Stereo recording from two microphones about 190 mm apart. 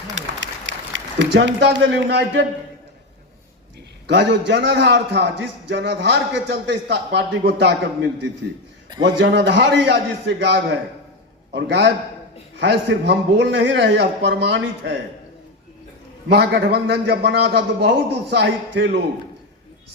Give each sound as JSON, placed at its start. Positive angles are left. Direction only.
{"t": 0.2, "sound": "a sound", "side_deg": -70}
{"t": 4.0, "sound": "a man's voice", "side_deg": -65}
{"t": 9.0, "sound": "a man's voice", "side_deg": -65}
{"t": 16.3, "sound": "a man's voice", "side_deg": -60}